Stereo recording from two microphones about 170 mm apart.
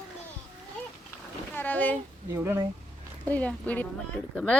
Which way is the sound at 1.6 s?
10° left (ahead or behind).